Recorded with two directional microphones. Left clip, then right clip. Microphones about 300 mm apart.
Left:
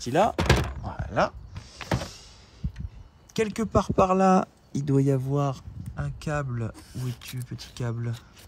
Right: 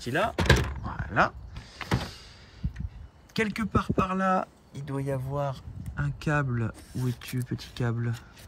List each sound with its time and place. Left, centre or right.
0.0 s speech: centre
0.4 s thunk: centre
1.6 s power windows: centre
2.0 s a sound: centre
3.3 s speech: centre
4.7 s speech: left
5.5 s speech: centre